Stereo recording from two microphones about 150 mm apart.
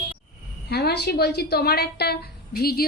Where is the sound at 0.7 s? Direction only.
90° left.